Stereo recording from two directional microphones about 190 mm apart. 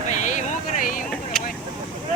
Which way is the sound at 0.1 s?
40° left (ahead or behind).